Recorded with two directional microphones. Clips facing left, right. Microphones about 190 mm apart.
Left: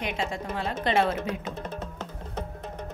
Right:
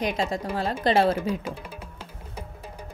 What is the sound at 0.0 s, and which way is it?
Speech, 35° right (ahead or behind).